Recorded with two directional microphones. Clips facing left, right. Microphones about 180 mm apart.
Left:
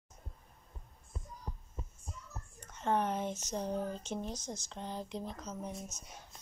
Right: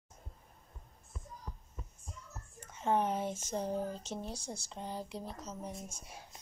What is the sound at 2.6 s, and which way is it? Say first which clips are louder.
Speech: right 1 dB; 10° right (ahead or behind).